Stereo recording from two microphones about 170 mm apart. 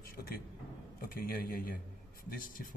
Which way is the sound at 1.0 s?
55° left (ahead or behind).